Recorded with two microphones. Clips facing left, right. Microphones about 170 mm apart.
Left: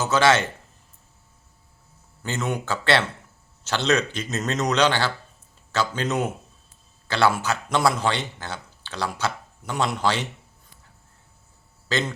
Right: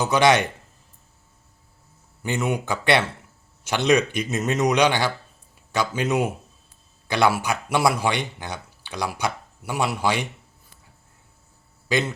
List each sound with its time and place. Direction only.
0.0 s speech: 15° right (ahead or behind)
2.2 s speech: 10° right (ahead or behind)
11.9 s speech: 10° right (ahead or behind)